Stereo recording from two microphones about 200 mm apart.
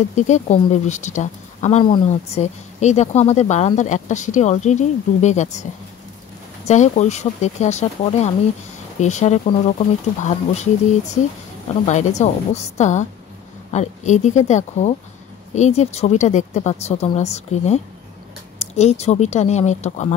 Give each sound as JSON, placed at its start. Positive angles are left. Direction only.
{"t": 0.1, "sound": "speech", "side_deg": 35}
{"t": 6.7, "sound": "speech", "side_deg": 35}
{"t": 11.8, "sound": "speech", "side_deg": 35}